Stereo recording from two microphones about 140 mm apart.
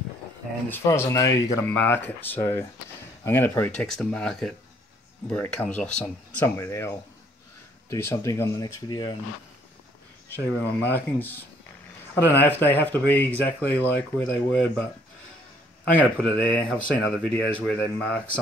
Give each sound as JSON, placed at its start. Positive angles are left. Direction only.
{"t": 0.7, "sound": "speech", "side_deg": 15}
{"t": 3.8, "sound": "speech", "side_deg": 5}
{"t": 6.4, "sound": "speech", "side_deg": 20}
{"t": 10.3, "sound": "speech", "side_deg": 15}
{"t": 12.4, "sound": "speech", "side_deg": 15}
{"t": 15.9, "sound": "speech", "side_deg": 10}